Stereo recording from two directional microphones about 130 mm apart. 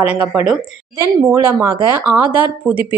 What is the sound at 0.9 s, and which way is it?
A woman's voice, 20° right (ahead or behind).